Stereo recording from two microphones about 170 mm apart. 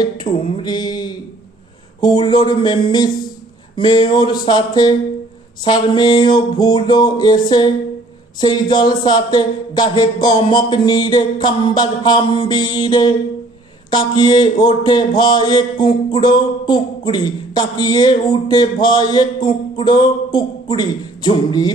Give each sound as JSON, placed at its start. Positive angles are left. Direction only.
{"t": 0.2, "sound": "speech", "side_deg": 25}